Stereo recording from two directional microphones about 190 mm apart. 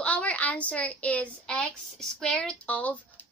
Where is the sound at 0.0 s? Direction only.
5° left (ahead or behind).